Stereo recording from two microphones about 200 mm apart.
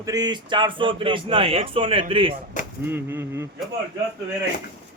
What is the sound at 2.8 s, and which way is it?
Speech, 10° right (ahead or behind).